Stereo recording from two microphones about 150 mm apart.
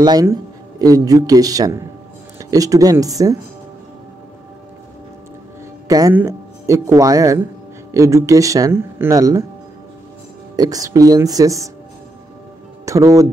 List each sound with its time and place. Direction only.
0.0 s speech: 25° right (ahead or behind)
5.9 s speech: 25° right (ahead or behind)
10.5 s speech: 25° right (ahead or behind)
12.8 s speech: 20° right (ahead or behind)